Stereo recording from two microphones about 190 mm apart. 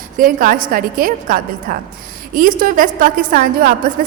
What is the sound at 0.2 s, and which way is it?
A woman's voice, 45° right (ahead or behind).